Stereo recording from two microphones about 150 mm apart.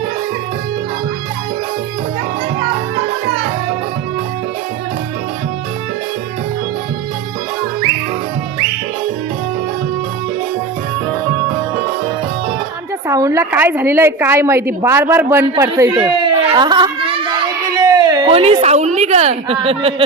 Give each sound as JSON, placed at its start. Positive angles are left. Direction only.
{"t": 13.1, "sound": "a woman's voice", "side_deg": -20}
{"t": 15.8, "sound": "a sound", "side_deg": -30}
{"t": 18.3, "sound": "a woman's voice", "side_deg": -40}